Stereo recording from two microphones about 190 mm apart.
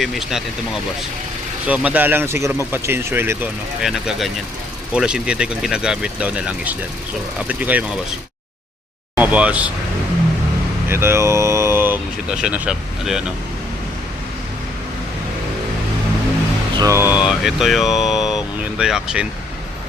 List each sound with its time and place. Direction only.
0.0 s speech: centre (ahead or behind)
1.6 s speech: 5° right (ahead or behind)
9.1 s speech: 10° right (ahead or behind)
10.8 s speech: 15° right (ahead or behind)
16.7 s speech: 15° right (ahead or behind)
17.2 s speech: 5° right (ahead or behind)